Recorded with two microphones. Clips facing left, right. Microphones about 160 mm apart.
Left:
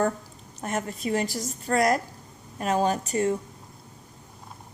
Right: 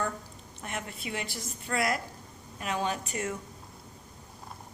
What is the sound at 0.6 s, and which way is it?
A woman's voice, 40° left (ahead or behind).